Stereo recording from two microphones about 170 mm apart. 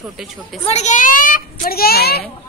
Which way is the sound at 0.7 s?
40° left (ahead or behind).